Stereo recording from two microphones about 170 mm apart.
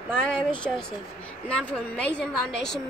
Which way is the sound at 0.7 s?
Centre (ahead or behind).